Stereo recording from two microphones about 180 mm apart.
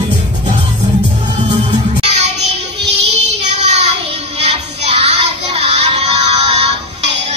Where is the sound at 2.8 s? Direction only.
70° right (ahead or behind).